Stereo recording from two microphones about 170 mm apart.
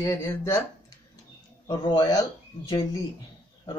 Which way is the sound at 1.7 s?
25° left (ahead or behind).